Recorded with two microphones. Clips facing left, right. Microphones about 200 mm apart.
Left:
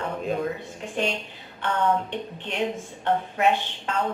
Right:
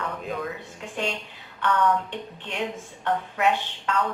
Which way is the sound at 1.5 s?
25° left (ahead or behind).